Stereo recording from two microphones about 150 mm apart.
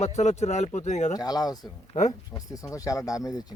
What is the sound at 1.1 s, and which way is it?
Speech, 25° left (ahead or behind).